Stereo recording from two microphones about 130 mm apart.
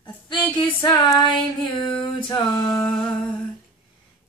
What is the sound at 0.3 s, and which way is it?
Music, 35° left (ahead or behind).